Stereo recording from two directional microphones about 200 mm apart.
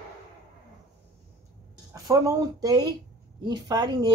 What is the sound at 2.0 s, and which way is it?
Speech, 15° right (ahead or behind).